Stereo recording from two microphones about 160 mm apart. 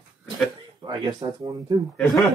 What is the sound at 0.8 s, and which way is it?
Speech, 30° right (ahead or behind).